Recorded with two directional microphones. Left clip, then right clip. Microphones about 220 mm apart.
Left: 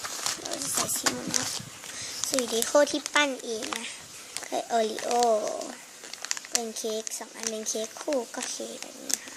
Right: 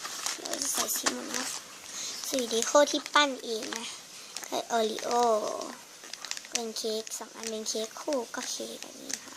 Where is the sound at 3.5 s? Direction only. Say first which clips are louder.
Left 2 dB; 25° left (ahead or behind).